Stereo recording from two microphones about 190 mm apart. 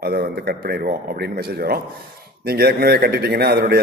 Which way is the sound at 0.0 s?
55° right (ahead or behind).